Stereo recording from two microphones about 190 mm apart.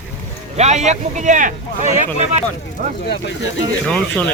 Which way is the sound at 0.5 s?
35° right (ahead or behind).